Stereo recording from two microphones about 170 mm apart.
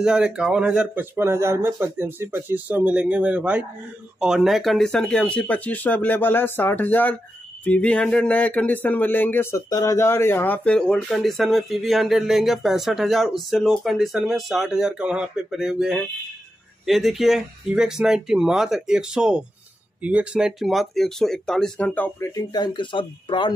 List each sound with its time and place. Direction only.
0.0 s speech: 5° right (ahead or behind); by 22.3 s 10° left (ahead or behind)
22.3 s speech: 25° left (ahead or behind)